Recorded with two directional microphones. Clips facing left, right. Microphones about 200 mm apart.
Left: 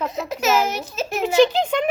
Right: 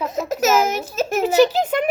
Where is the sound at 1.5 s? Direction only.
5° right (ahead or behind).